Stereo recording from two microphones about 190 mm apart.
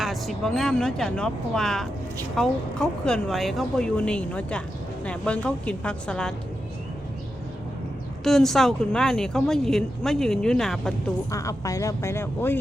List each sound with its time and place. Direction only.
0.0 s speech: centre (ahead or behind)
8.2 s speech: centre (ahead or behind)
11.3 s speech: 15° left (ahead or behind)